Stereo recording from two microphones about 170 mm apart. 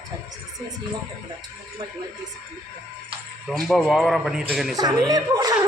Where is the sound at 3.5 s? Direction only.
Centre (ahead or behind).